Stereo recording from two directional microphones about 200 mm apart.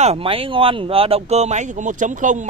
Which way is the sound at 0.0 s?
30° right (ahead or behind).